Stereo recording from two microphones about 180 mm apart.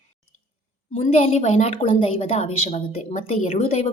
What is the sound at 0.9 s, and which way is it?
A woman's voice, 35° left (ahead or behind).